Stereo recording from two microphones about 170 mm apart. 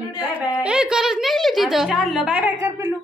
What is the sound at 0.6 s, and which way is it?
Speech, 5° right (ahead or behind).